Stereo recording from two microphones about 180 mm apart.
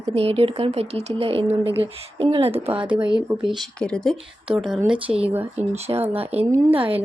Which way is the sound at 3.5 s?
5° left (ahead or behind).